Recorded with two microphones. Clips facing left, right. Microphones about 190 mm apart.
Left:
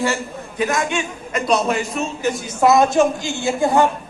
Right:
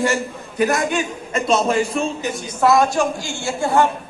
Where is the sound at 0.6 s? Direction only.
40° right (ahead or behind).